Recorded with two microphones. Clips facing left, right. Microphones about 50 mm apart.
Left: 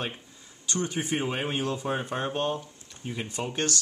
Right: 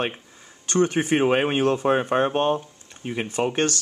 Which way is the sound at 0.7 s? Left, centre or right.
Right.